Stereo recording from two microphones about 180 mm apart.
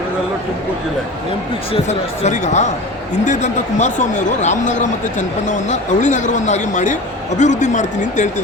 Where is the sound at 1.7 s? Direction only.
40° left (ahead or behind).